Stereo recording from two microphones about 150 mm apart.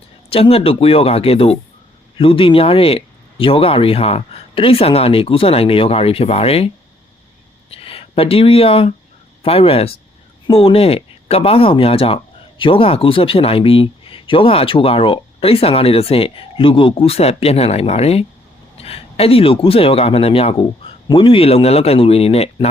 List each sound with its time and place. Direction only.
0.3 s speech: 40° left (ahead or behind)
7.7 s speech: 40° left (ahead or behind)